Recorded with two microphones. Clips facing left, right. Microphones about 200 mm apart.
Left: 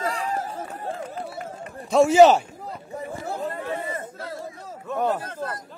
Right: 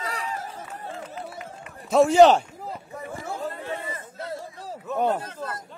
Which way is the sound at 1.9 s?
Centre (ahead or behind).